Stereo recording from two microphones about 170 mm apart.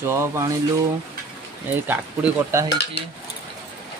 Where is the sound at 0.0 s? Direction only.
15° right (ahead or behind).